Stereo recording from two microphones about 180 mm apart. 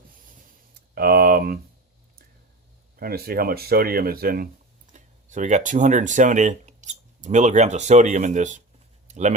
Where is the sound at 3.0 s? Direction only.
55° right (ahead or behind).